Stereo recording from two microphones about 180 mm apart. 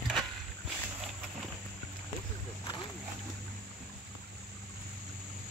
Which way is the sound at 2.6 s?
25° left (ahead or behind).